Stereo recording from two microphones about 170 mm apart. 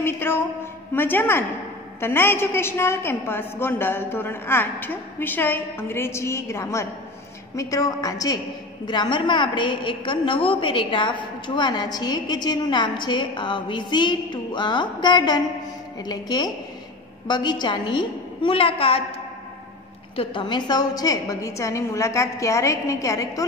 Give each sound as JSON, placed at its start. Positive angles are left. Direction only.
{"t": 0.0, "sound": "a woman's voice", "side_deg": 15}
{"t": 20.2, "sound": "a woman's voice", "side_deg": 30}